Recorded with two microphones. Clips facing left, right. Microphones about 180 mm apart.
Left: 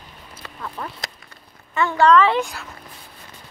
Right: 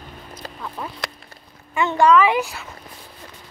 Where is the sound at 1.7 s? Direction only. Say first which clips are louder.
Even; 15° right (ahead or behind).